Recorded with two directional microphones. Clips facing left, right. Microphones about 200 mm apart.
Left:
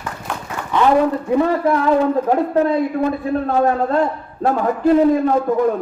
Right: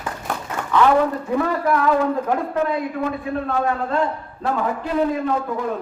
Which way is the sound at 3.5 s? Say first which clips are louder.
Left 6 dB; 40° left (ahead or behind).